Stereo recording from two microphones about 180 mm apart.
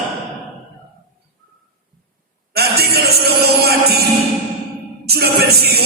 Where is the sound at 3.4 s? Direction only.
60° right (ahead or behind).